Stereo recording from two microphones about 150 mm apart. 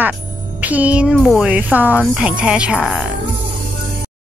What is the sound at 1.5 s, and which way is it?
A woman's voice, 10° right (ahead or behind).